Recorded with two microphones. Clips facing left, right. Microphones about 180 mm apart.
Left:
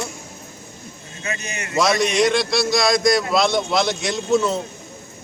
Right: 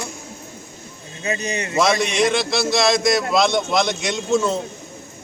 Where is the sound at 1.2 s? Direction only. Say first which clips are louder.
Right 6 dB; 30° right (ahead or behind).